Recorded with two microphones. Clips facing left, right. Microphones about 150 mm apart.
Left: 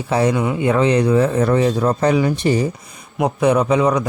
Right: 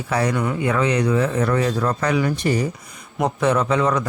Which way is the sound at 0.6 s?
25° left (ahead or behind).